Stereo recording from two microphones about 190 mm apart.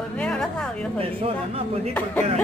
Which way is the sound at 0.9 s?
30° right (ahead or behind).